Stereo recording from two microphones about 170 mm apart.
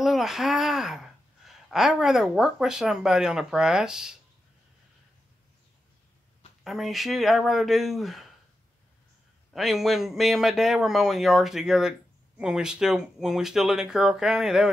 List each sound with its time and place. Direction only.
0.0 s speech: centre (ahead or behind)
6.6 s speech: centre (ahead or behind)
9.5 s speech: centre (ahead or behind)